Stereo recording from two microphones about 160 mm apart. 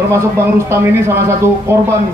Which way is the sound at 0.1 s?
15° right (ahead or behind).